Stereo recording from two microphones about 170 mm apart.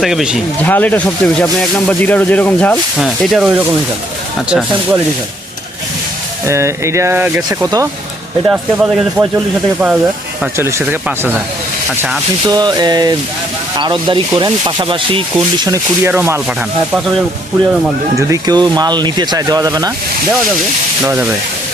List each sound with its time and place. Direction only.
0.0 s rub: centre (ahead or behind)
0.6 s speech: 10° left (ahead or behind)
3.0 s rub: centre (ahead or behind)
6.4 s speech: 15° right (ahead or behind)
10.6 s speech: 15° right (ahead or behind)
12.5 s speech: 25° right (ahead or behind)
15.6 s speech: 15° right (ahead or behind)
18.2 s speech: 20° right (ahead or behind)
21.0 s speech: 10° right (ahead or behind)